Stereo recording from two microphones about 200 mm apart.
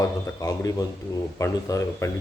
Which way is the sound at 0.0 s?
15° left (ahead or behind).